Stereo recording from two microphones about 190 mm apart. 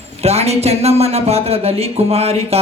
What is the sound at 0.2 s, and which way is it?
A man's voice, 35° right (ahead or behind).